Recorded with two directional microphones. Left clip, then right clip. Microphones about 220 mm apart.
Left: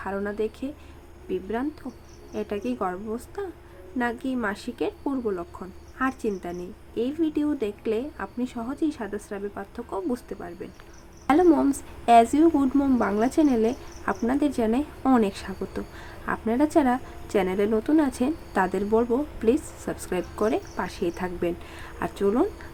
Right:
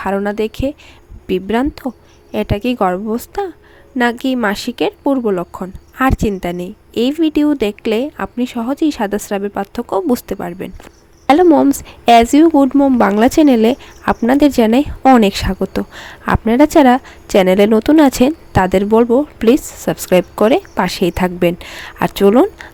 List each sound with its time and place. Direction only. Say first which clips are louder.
0.0 s speech: right 11 dB; 45° right (ahead or behind)
11.4 s speech: right 10 dB; 35° right (ahead or behind)